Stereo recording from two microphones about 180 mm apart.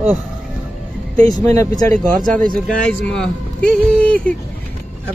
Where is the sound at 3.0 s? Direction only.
5° left (ahead or behind).